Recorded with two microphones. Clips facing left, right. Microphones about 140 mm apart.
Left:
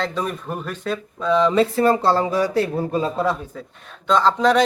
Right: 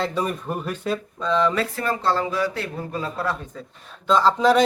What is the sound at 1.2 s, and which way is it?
Speech, 15° left (ahead or behind).